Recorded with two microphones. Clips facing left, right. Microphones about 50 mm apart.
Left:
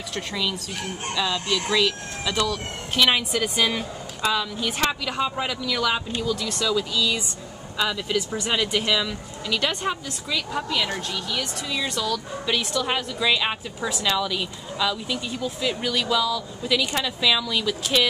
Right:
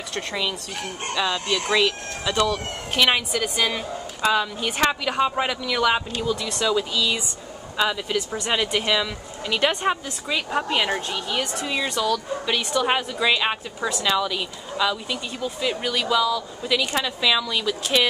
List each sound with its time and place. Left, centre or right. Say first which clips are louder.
0.1 s speech: right 1 dB; centre
4.2 s speech: right 3 dB; centre
8.2 s speech: even; centre
8.5 s speech: right 2 dB; centre
11.9 s speech: right 3 dB; centre
12.8 s speech: right 2 dB; centre